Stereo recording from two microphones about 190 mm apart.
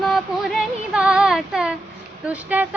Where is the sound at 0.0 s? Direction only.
Centre (ahead or behind).